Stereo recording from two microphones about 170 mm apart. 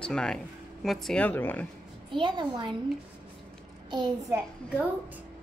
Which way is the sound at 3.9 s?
25° right (ahead or behind).